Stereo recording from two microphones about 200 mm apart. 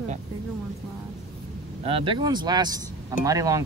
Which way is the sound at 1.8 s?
25° right (ahead or behind).